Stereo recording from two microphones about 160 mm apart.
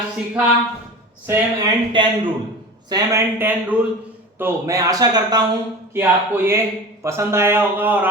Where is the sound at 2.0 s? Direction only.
30° right (ahead or behind); by 8.1 s 10° right (ahead or behind).